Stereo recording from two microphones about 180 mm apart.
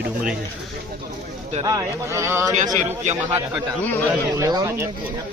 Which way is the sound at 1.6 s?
20° right (ahead or behind).